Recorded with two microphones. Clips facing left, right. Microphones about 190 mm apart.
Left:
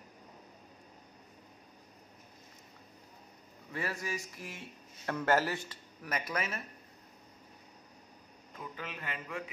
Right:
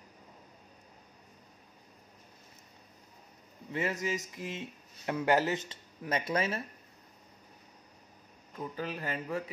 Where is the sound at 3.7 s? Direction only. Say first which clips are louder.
Right 5 dB; 20° right (ahead or behind).